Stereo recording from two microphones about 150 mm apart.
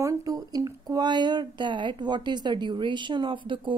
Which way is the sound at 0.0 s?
25° right (ahead or behind).